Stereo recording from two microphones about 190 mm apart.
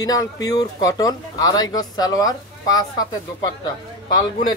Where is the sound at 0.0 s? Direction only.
20° left (ahead or behind).